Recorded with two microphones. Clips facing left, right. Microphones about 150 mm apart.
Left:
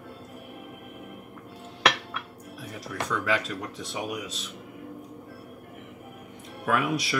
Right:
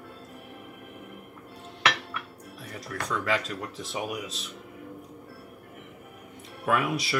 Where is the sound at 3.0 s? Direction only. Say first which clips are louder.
Even; centre (ahead or behind).